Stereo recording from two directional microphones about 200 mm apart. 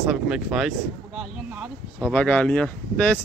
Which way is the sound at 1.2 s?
5° right (ahead or behind).